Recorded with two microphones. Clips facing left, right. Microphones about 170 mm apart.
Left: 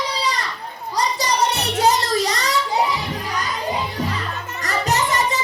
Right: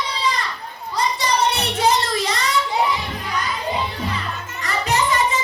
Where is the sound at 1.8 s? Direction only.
40° left (ahead or behind).